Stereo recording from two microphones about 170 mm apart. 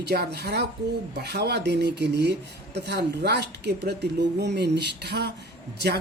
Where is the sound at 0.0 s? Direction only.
75° right (ahead or behind).